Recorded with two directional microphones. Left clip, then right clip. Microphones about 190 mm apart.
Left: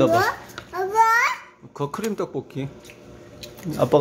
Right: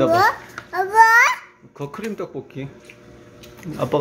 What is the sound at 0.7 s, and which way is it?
Babbling, 30° right (ahead or behind).